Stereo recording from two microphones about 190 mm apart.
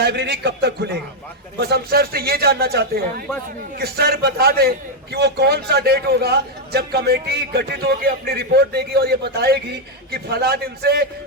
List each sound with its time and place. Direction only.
0.0 s a man's voice: 60° right (ahead or behind)